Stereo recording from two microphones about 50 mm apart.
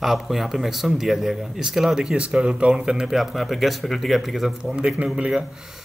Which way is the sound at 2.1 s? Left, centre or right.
Right.